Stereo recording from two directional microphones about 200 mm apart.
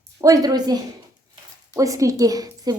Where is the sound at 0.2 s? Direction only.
20° right (ahead or behind).